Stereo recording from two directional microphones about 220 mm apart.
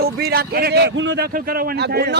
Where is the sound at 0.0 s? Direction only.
45° right (ahead or behind).